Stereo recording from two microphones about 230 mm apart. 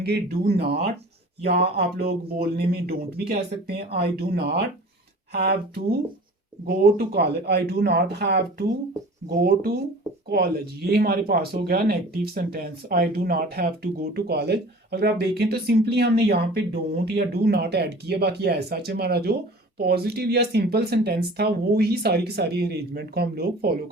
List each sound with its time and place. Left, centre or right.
0.0 s speech: right
1.7 s speech: right